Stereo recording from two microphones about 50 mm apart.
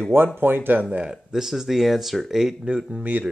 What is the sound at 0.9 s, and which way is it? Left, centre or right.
Speech, centre.